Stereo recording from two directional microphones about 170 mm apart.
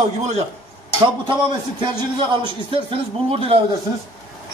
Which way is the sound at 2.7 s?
35° right (ahead or behind).